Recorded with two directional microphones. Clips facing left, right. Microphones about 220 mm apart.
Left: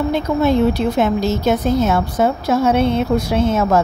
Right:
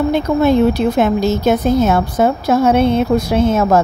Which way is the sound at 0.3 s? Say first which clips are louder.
Right 2 dB; 50° right (ahead or behind).